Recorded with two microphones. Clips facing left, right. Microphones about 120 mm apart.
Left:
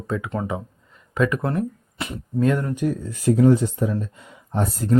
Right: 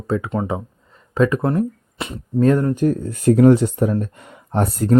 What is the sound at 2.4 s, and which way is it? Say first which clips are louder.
Speech: right 5 dB; 35° right (ahead or behind).